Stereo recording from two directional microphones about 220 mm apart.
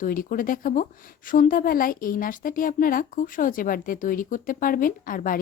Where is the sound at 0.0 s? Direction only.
40° left (ahead or behind).